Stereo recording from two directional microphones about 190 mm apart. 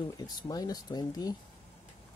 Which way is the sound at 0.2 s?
20° left (ahead or behind).